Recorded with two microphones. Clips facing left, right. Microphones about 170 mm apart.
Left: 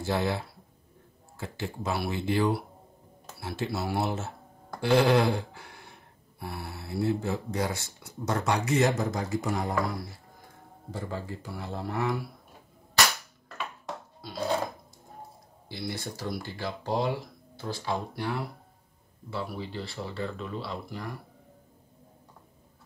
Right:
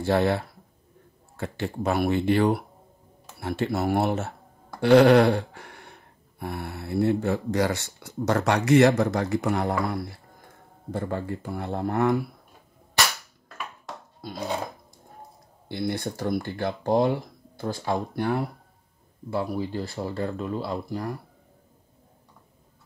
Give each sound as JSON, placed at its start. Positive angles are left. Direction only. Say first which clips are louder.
{"t": 0.0, "sound": "speech", "louder": "right 6 dB", "side_deg": -60}
{"t": 3.3, "sound": "speech", "louder": "right 6 dB", "side_deg": -55}
{"t": 4.7, "sound": "a sound", "louder": "right 7 dB", "side_deg": -65}
{"t": 6.4, "sound": "speech", "louder": "right 5 dB", "side_deg": -55}
{"t": 15.7, "sound": "speech", "louder": "right 7 dB", "side_deg": -55}